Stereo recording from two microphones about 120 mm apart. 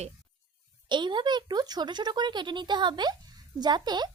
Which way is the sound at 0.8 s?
40° right (ahead or behind).